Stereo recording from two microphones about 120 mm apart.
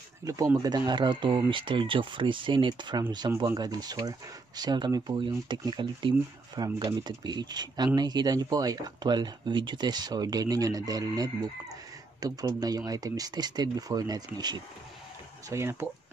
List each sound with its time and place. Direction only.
0.2 s speech: 30° right (ahead or behind)
15.5 s speech: 20° right (ahead or behind)